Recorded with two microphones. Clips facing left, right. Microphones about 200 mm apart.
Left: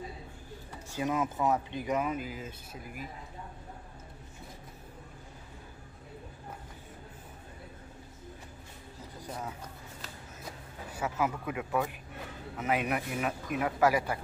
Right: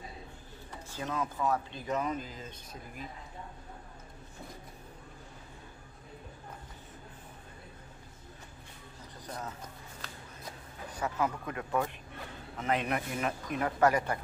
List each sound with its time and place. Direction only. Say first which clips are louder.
0.9 s speech: left 4 dB; 15° left (ahead or behind)
9.2 s a sound: left 1 dB; 10° left (ahead or behind)
10.9 s speech: left 1 dB; 5° left (ahead or behind)